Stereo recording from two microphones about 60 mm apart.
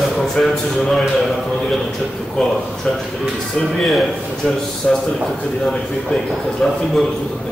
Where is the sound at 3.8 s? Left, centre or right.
Centre.